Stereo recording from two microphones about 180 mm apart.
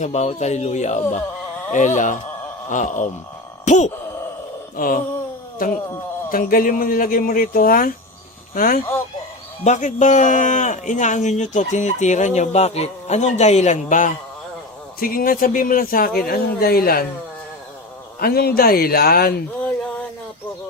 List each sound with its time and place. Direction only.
0.0 s a man's voice: 35° left (ahead or behind)
4.8 s a man's voice: 50° left (ahead or behind)
14.9 s a man's voice: 55° left (ahead or behind)
18.2 s speech: 60° left (ahead or behind)